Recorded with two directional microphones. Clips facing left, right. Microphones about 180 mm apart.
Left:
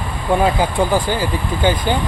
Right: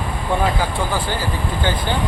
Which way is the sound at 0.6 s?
15° left (ahead or behind).